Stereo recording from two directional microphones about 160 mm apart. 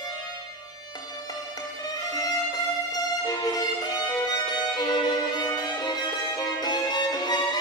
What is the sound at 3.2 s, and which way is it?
Violin, 25° left (ahead or behind).